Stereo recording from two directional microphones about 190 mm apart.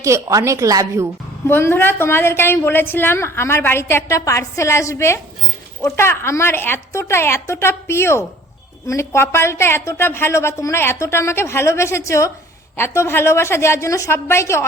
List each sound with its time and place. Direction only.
0.0 s speech: 15° right (ahead or behind)
1.5 s a woman's voice: 10° left (ahead or behind)